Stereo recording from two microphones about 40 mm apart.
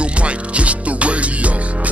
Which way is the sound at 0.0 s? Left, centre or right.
Right.